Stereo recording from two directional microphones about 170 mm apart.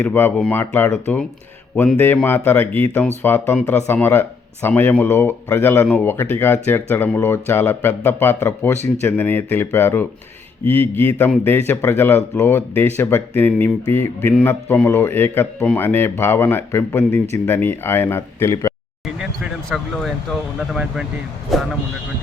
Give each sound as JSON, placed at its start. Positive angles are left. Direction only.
{"t": 0.0, "sound": "speech", "side_deg": 10}
{"t": 19.7, "sound": "speech", "side_deg": 0}